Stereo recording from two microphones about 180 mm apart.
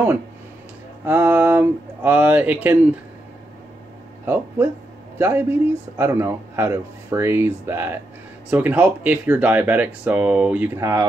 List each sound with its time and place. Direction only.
1.0 s speech: 10° right (ahead or behind)
5.2 s speech: 10° right (ahead or behind)